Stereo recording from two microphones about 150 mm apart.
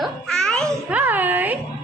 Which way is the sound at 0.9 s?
10° right (ahead or behind).